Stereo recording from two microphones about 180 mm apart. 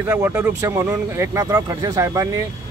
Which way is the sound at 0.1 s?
15° right (ahead or behind).